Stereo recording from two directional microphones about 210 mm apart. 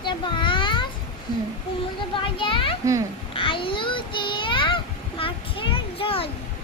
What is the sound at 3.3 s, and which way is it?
Child singing, 25° left (ahead or behind).